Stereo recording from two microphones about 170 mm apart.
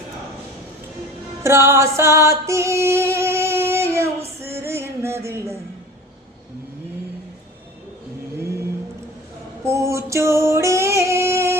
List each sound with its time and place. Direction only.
1.5 s music: 15° right (ahead or behind)
8.4 s vehicle: 15° right (ahead or behind)
9.6 s female singing: 15° right (ahead or behind)